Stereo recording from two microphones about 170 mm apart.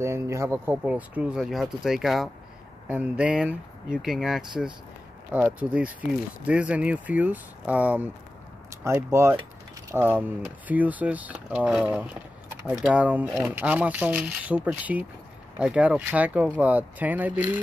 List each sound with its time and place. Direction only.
0.0 s speech: 15° right (ahead or behind)